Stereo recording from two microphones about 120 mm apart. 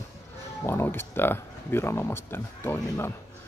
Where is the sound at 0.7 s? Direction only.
20° left (ahead or behind).